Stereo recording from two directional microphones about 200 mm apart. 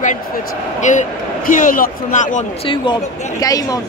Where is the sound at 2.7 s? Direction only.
25° left (ahead or behind).